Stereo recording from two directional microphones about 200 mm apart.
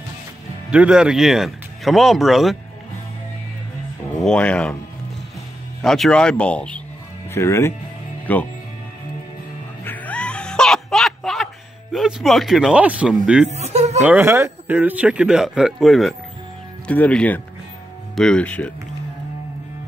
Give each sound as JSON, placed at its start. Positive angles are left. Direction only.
{"t": 0.7, "sound": "a man's voice", "side_deg": -5}
{"t": 4.2, "sound": "a man's voice", "side_deg": 5}
{"t": 5.8, "sound": "a man's voice", "side_deg": 0}
{"t": 9.8, "sound": "music", "side_deg": 10}
{"t": 11.9, "sound": "a man's voice", "side_deg": 0}
{"t": 13.6, "sound": "speech", "side_deg": -35}
{"t": 14.0, "sound": "a man's voice", "side_deg": -10}